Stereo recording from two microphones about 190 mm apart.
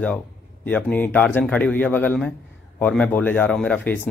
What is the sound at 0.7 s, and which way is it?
Speech, 10° left (ahead or behind).